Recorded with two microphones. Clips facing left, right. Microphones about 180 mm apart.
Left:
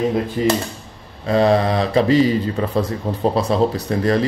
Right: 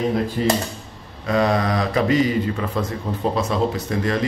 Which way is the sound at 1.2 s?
30° left (ahead or behind).